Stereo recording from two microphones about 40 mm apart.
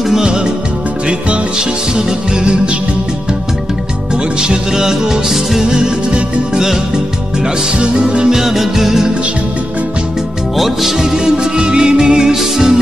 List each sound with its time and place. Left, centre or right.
0.1 s music: centre
2.0 s music: centre
4.4 s music: centre
8.0 s music: centre
8.4 s music: centre
10.6 s music: centre